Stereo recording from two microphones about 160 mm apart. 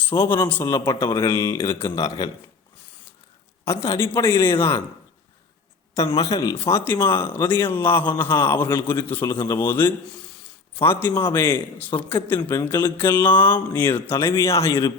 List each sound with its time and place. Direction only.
0.3 s speech: 10° left (ahead or behind)
1.0 s speech: 25° left (ahead or behind)
3.7 s speech: 20° left (ahead or behind)
6.0 s speech: 30° left (ahead or behind)